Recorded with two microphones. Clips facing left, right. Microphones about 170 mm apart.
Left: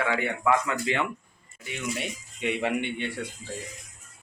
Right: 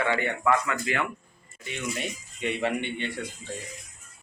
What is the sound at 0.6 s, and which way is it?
Speech, 20° left (ahead or behind).